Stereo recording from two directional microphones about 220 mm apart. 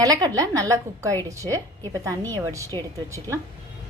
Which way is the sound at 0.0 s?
15° right (ahead or behind).